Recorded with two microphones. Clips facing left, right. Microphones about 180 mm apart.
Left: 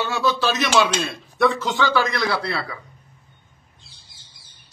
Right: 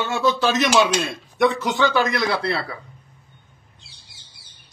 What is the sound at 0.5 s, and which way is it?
Speech, 45° right (ahead or behind).